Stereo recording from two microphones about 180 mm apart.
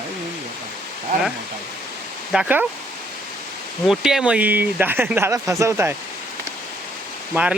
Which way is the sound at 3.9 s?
Centre (ahead or behind).